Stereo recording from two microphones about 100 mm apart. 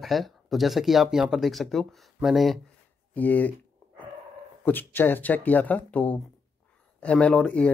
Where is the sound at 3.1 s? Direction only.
15° left (ahead or behind).